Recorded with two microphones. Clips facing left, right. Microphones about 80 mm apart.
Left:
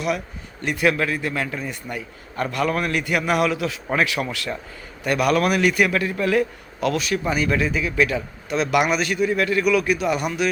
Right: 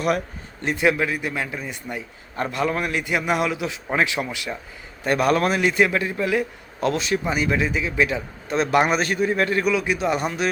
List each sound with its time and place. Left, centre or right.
0.6 s a man's voice: right
5.0 s a man's voice: right